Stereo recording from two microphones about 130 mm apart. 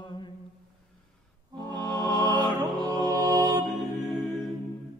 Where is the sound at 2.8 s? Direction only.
30° right (ahead or behind).